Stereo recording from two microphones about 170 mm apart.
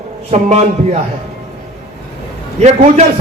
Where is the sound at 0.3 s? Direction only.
40° right (ahead or behind).